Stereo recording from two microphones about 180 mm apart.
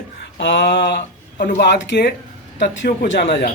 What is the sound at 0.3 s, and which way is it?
Speech, 80° left.